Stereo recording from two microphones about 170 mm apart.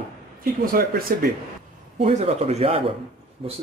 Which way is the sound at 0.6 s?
60° right (ahead or behind).